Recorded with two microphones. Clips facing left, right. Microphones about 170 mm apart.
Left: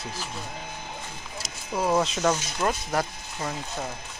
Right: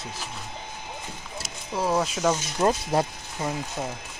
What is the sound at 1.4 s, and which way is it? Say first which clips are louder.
Speech: left 1 dB; 5° right (ahead or behind).